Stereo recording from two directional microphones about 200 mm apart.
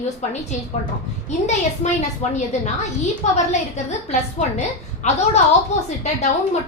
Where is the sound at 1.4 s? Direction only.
35° left (ahead or behind).